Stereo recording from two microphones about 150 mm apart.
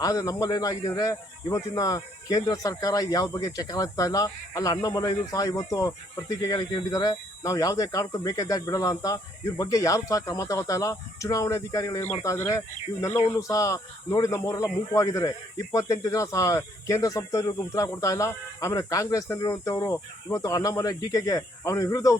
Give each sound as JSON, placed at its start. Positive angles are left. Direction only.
{"t": 0.0, "sound": "speech", "side_deg": 25}